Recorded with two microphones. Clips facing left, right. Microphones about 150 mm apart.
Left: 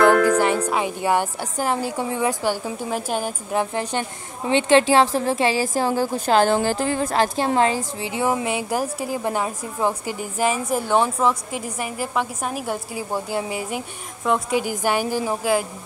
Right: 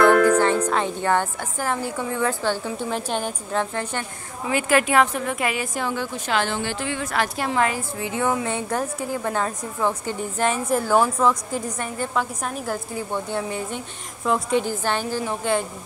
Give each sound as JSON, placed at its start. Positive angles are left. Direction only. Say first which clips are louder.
{"t": 0.4, "sound": "a woman's voice", "louder": "even", "side_deg": 10}
{"t": 3.7, "sound": "a woman's voice", "louder": "left 3 dB", "side_deg": 15}
{"t": 8.5, "sound": "a woman's voice", "louder": "left 2 dB", "side_deg": 5}